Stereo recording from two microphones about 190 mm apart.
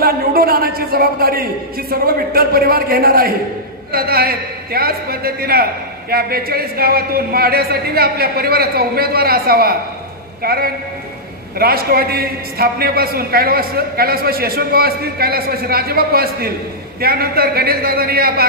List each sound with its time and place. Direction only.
0.0 s a man's voice: 50° right (ahead or behind)